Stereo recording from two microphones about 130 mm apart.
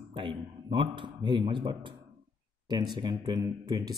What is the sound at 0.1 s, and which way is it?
Speech, 40° right (ahead or behind).